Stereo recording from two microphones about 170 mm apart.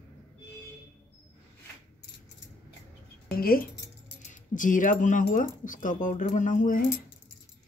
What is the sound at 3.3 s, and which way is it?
Speech, 60° left (ahead or behind).